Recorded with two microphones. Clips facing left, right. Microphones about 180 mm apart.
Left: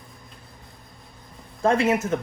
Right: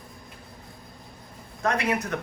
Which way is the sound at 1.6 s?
25° left (ahead or behind).